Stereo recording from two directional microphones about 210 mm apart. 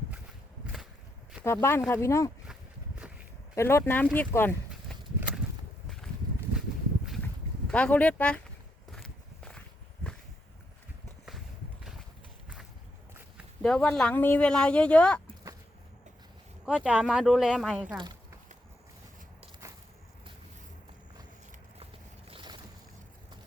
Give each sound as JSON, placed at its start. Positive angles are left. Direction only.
{"t": 1.5, "sound": "speech", "side_deg": 10}
{"t": 3.5, "sound": "speech", "side_deg": 15}
{"t": 4.7, "sound": "a sound", "side_deg": 0}
{"t": 7.7, "sound": "speech", "side_deg": 5}
{"t": 8.9, "sound": "walk", "side_deg": 0}
{"t": 11.3, "sound": "walk", "side_deg": 0}
{"t": 13.6, "sound": "speech", "side_deg": 5}
{"t": 16.6, "sound": "speech", "side_deg": -5}
{"t": 17.9, "sound": "a sound", "side_deg": -20}
{"t": 22.3, "sound": "boat", "side_deg": -20}